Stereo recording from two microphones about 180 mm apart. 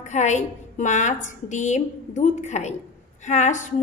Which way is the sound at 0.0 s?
40° left (ahead or behind).